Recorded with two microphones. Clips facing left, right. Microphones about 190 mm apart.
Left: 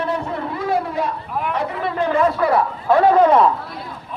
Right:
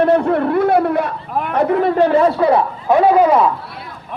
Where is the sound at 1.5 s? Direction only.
50° right (ahead or behind); by 3.5 s 5° right (ahead or behind).